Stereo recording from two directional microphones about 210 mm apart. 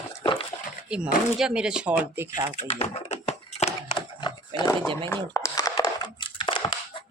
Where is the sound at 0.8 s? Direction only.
5° right (ahead or behind).